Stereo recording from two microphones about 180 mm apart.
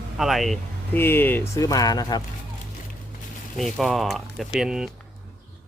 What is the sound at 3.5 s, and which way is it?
Speech, centre (ahead or behind).